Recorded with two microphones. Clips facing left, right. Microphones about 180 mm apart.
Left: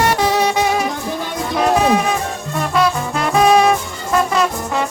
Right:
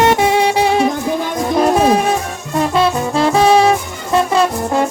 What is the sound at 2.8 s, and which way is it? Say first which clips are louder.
Music: right 1 dB; 30° right (ahead or behind).